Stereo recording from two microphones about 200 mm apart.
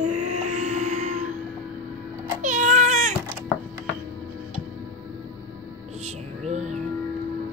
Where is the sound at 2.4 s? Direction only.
40° right (ahead or behind).